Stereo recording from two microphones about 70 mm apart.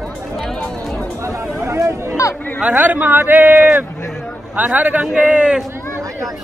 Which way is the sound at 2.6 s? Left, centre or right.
Right.